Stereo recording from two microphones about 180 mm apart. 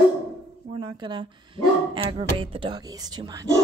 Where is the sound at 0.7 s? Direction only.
25° right (ahead or behind).